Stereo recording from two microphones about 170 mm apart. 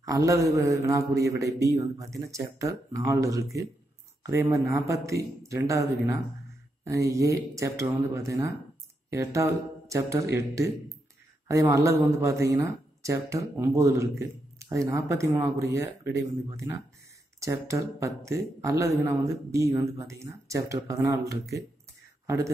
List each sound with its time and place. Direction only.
0.0 s a man's voice: 20° right (ahead or behind)
11.7 s a man's voice: 15° right (ahead or behind)
22.2 s a sound: 15° right (ahead or behind)